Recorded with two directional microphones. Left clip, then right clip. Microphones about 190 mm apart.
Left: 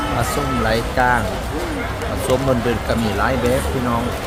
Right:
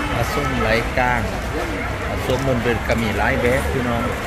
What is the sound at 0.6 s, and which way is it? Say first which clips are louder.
Speech: left 2 dB; 15° left (ahead or behind).